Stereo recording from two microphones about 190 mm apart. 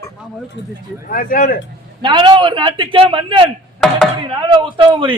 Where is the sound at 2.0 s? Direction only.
25° right (ahead or behind).